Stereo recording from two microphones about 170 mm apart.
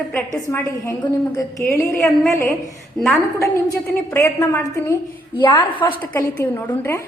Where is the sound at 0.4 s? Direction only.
15° left (ahead or behind).